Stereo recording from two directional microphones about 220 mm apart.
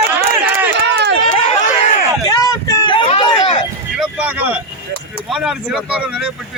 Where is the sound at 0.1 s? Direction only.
10° right (ahead or behind).